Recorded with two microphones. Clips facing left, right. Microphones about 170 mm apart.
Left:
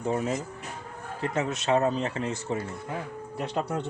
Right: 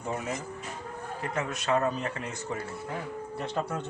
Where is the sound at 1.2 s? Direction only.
25° left (ahead or behind).